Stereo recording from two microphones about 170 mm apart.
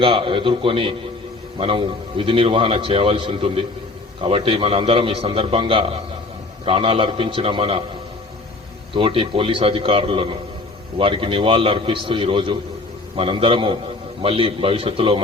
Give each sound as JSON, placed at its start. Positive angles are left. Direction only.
{"t": 0.0, "sound": "a man's voice", "side_deg": -30}
{"t": 8.9, "sound": "a man's voice", "side_deg": -30}